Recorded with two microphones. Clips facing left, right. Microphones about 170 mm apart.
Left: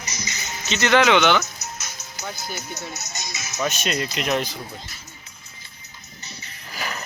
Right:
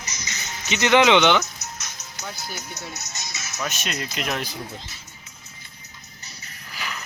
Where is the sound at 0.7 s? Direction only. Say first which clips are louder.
Right 1 dB; 15° right (ahead or behind).